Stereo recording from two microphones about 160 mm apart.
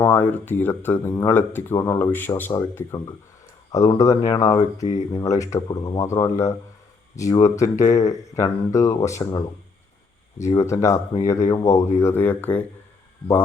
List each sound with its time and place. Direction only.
0.0 s speech: 15° left (ahead or behind)
4.8 s speech: 45° left (ahead or behind)
5.1 s speech: 20° left (ahead or behind)